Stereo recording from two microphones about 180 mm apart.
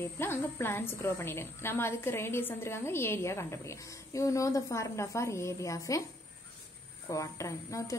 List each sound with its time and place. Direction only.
0.0 s a woman's voice: 15° left (ahead or behind)
7.1 s a woman's voice: 15° left (ahead or behind)